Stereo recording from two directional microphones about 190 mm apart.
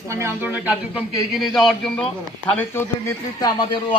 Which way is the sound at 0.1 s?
15° right (ahead or behind).